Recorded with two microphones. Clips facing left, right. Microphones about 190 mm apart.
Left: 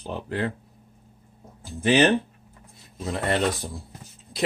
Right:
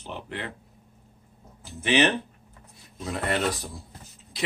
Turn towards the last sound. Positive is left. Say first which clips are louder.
# left 3 dB
turn(degrees=30)  # may be behind; listen again after turning